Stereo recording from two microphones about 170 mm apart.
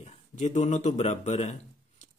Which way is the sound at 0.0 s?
45° left (ahead or behind).